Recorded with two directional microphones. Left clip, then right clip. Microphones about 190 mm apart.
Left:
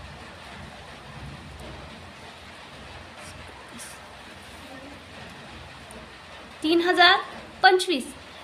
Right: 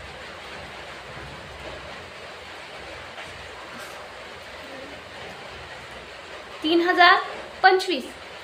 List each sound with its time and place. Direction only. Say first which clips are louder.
6.7 s a woman's voice: right 2 dB; 30° left (ahead or behind)